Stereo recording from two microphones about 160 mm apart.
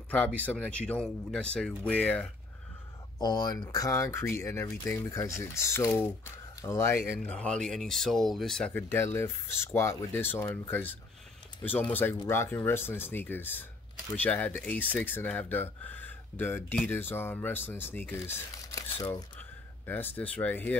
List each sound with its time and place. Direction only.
0.4 s speech: 10° left (ahead or behind)
3.2 s speech: 25° left (ahead or behind)
7.2 s speech: 5° left (ahead or behind)
11.6 s speech: 10° left (ahead or behind)
19.9 s speech: 10° left (ahead or behind)